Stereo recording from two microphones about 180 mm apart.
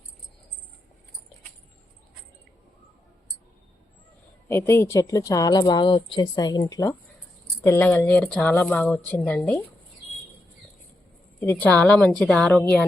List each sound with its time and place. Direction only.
4.4 s speech: 10° left (ahead or behind)
11.3 s speech: 10° left (ahead or behind)